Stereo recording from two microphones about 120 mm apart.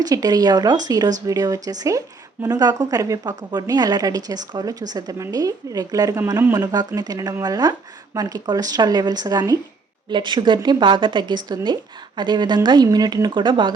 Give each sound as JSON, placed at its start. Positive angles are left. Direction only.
{"t": 0.0, "sound": "a woman's voice", "side_deg": -30}